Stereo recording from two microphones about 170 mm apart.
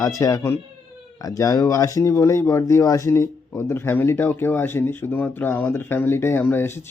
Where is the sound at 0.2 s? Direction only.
20° left (ahead or behind).